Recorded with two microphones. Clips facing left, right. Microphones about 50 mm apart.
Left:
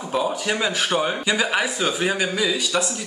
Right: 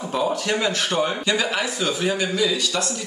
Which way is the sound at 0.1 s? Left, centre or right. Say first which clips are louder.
Even; centre.